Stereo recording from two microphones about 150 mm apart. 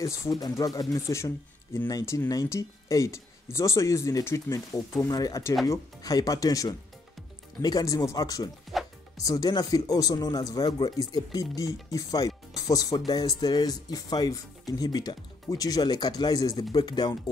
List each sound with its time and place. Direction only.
0.0 s speech: 20° left (ahead or behind)
8.7 s music: centre (ahead or behind)
9.2 s speech: 25° left (ahead or behind)